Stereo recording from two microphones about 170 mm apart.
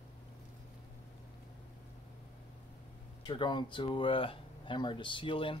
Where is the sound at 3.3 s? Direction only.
25° left (ahead or behind).